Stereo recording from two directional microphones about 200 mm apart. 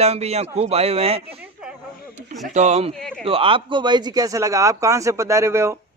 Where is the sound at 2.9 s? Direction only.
5° left (ahead or behind).